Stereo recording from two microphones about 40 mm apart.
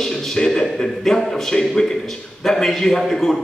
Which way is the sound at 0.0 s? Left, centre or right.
Centre.